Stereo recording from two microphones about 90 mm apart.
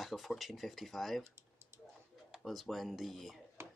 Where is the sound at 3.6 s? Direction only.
30° right (ahead or behind).